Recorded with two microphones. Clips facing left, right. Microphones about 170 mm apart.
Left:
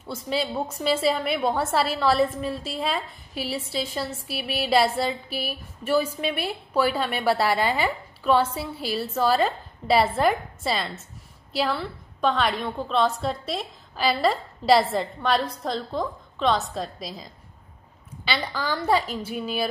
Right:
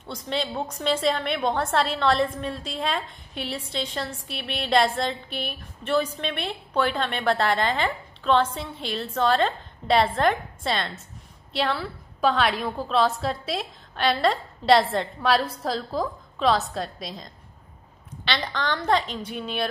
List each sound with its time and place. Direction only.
0.0 s a woman's voice: 5° left (ahead or behind)